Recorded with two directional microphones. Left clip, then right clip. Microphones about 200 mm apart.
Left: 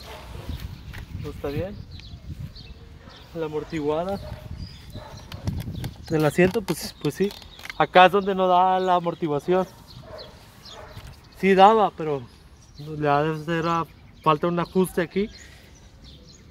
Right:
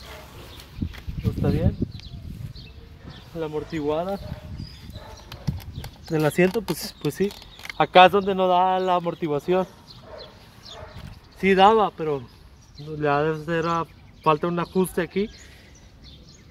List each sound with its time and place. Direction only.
1.4 s speech: 25° right (ahead or behind)
3.1 s a sound: 30° right (ahead or behind)
3.7 s speech: 10° right (ahead or behind)
6.1 s speech: 10° left (ahead or behind)
7.7 s speech: 15° right (ahead or behind)
8.5 s speech: 10° left (ahead or behind)
11.3 s speech: 15° left (ahead or behind)
12.9 s speech: 25° left (ahead or behind)